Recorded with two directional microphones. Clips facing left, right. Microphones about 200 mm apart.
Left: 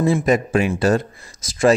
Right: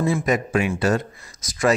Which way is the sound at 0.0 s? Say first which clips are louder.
Left 4 dB; 30° left (ahead or behind).